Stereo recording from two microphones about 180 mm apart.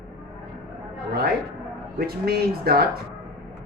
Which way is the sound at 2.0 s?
60° right (ahead or behind).